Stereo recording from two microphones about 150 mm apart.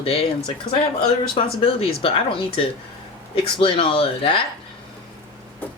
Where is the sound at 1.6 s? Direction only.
40° left (ahead or behind).